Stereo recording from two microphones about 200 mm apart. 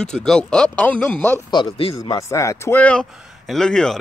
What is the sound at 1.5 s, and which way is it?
Speech, 20° left (ahead or behind).